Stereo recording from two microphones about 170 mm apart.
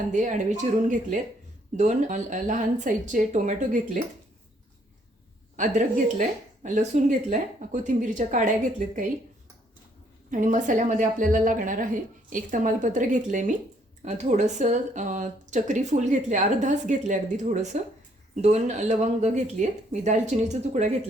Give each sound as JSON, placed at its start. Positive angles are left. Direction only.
{"t": 0.1, "sound": "speech", "side_deg": -45}
{"t": 5.5, "sound": "speech", "side_deg": -45}
{"t": 10.3, "sound": "speech", "side_deg": -45}